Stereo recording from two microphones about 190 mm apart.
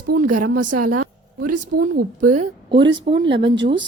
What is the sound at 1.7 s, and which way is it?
Speech, 50° right (ahead or behind).